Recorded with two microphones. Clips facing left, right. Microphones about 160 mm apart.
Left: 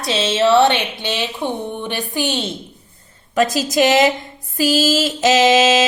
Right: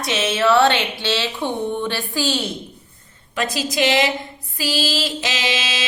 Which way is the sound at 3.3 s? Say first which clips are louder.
Left 6 dB; 45° left (ahead or behind).